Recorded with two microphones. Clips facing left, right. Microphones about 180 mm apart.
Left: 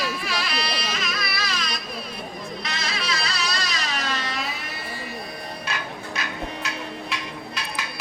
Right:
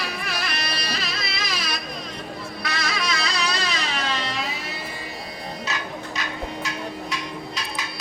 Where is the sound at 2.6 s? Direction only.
25° left (ahead or behind).